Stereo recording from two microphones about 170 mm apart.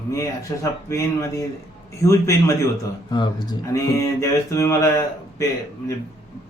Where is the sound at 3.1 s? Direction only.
25° left (ahead or behind).